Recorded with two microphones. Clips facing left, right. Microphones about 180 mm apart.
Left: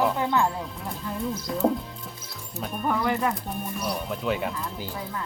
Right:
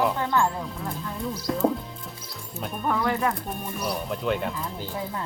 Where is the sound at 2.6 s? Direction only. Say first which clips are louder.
Even; 5° left (ahead or behind).